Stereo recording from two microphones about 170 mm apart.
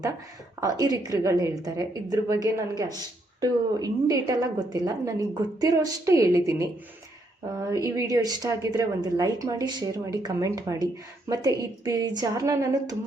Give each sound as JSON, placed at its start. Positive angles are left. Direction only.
{"t": 0.6, "sound": "a woman's voice", "side_deg": -20}